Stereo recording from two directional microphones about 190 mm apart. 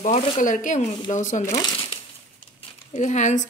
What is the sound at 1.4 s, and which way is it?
Speech, 15° left (ahead or behind).